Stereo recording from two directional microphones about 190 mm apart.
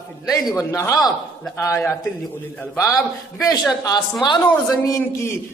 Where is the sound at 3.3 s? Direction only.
20° left (ahead or behind).